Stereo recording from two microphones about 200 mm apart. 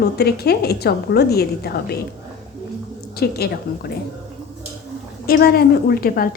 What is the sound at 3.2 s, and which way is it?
Speech, 50° left (ahead or behind).